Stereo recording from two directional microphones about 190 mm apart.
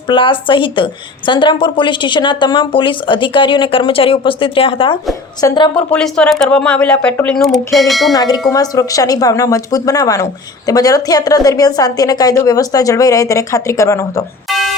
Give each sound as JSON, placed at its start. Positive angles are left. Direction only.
{"t": 0.1, "sound": "a woman's voice", "side_deg": 25}
{"t": 5.7, "sound": "speech", "side_deg": 5}
{"t": 8.1, "sound": "a woman's voice", "side_deg": 20}